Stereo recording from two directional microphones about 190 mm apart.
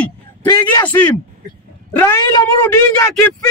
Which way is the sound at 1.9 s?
10° left (ahead or behind).